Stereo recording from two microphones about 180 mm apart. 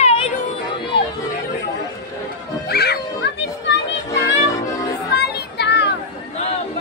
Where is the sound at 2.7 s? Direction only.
60° left (ahead or behind).